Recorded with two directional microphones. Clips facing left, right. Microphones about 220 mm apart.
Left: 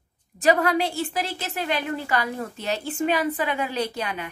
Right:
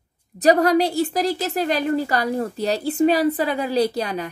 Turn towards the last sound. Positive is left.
turn(degrees=-35)  # may be behind; listen again after turning